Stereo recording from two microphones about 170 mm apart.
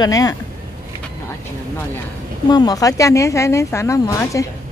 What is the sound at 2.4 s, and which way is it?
Speech, 25° left (ahead or behind).